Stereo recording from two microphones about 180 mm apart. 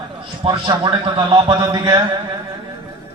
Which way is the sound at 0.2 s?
30° right (ahead or behind).